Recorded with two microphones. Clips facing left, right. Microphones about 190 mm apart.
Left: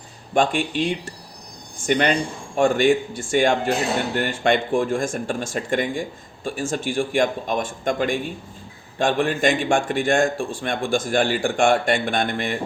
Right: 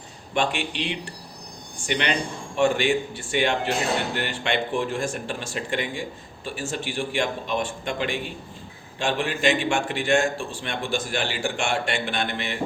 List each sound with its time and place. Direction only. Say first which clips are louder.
0.3 s speech: left 5 dB; 45° left (ahead or behind)